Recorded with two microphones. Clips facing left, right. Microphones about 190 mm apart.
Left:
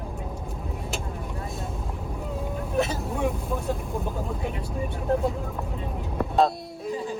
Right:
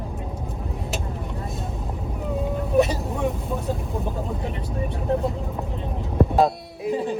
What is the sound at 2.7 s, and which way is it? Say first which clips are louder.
Speech: right 6 dB; centre (ahead or behind).